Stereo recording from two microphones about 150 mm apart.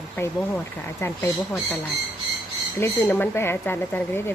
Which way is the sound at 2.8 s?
15° left (ahead or behind).